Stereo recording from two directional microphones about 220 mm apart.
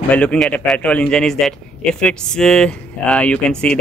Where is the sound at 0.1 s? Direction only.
5° left (ahead or behind).